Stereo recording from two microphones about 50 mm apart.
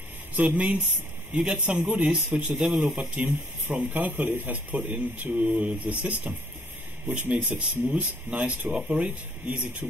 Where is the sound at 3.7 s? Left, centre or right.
Right.